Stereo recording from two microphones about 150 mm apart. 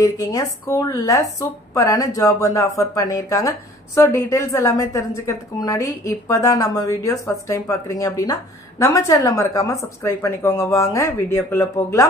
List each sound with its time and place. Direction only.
0.0 s speech: 25° left (ahead or behind)